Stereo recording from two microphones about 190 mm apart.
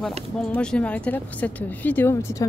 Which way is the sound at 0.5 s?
5° left (ahead or behind).